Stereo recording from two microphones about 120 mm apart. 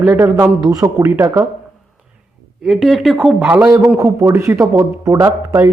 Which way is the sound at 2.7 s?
Centre (ahead or behind).